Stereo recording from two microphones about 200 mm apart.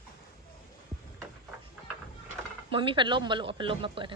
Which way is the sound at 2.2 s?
25° right (ahead or behind).